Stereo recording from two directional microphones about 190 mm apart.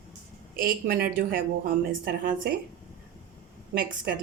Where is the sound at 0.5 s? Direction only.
50° right (ahead or behind).